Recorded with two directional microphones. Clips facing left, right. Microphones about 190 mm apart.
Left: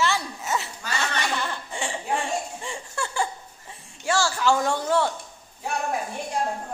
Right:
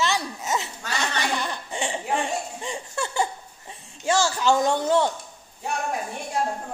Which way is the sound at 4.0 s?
20° right (ahead or behind).